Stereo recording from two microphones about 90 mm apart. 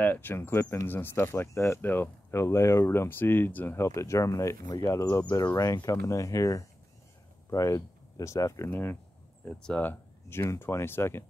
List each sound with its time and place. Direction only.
0.0 s speech: 20° left (ahead or behind)
2.3 s speech: 35° left (ahead or behind)
8.6 s speech: 25° left (ahead or behind)
9.6 s speech: 10° left (ahead or behind)
9.8 s speech: 30° left (ahead or behind)